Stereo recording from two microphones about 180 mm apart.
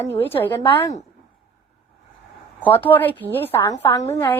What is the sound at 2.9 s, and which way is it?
Speech, 10° left (ahead or behind).